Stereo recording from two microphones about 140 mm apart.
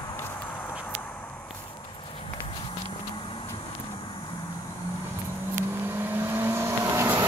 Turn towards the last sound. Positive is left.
turn(degrees=-20)  # may be behind; listen again after turning